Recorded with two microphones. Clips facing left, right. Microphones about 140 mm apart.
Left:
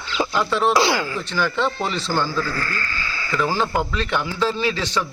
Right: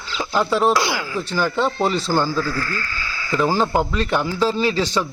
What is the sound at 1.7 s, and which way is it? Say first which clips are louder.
Speech: right 5 dB; 40° right (ahead or behind).